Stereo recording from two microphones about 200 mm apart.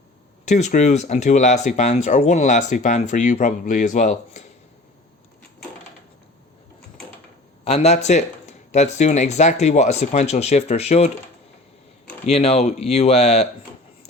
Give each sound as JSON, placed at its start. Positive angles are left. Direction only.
{"t": 0.4, "sound": "speech", "side_deg": 35}
{"t": 7.6, "sound": "speech", "side_deg": 30}
{"t": 12.2, "sound": "speech", "side_deg": 30}